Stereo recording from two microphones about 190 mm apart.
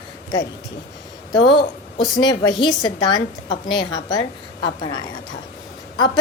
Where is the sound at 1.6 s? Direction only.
25° left (ahead or behind).